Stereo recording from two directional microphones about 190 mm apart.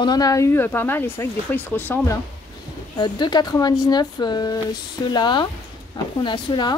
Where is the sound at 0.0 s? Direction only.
20° left (ahead or behind).